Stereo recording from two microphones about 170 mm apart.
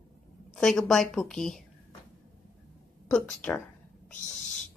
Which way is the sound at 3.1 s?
5° left (ahead or behind).